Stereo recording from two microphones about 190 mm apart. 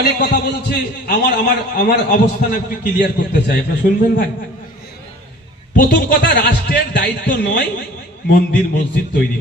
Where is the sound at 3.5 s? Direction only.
45° left (ahead or behind).